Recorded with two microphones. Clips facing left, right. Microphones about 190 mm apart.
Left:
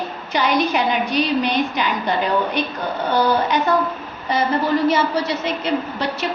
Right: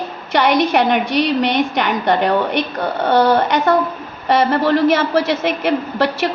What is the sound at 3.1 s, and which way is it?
A woman's voice, 80° right.